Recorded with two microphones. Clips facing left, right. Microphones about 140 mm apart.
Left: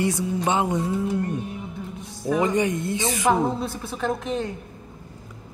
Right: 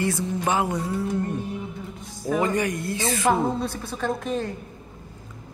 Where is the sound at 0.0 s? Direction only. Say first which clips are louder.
Left 1 dB; 15° left (ahead or behind).